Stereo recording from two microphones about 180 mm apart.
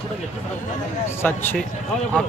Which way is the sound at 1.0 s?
10° left (ahead or behind).